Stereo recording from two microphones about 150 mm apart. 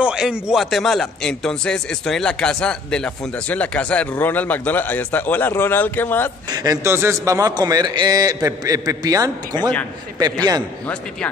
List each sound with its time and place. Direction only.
0.0 s speech: 5° right (ahead or behind); by 6.3 s 15° left (ahead or behind)
6.5 s a man's voice: 25° right (ahead or behind)